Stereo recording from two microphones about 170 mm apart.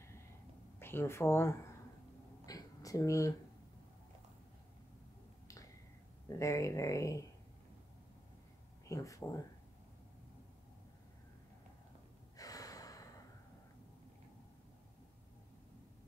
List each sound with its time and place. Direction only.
0.7 s a woman's voice: 15° left (ahead or behind)
2.4 s a sound: 20° left (ahead or behind)
6.2 s speech: 20° left (ahead or behind)
8.8 s speech: 20° left (ahead or behind)
12.4 s gasp: 20° left (ahead or behind)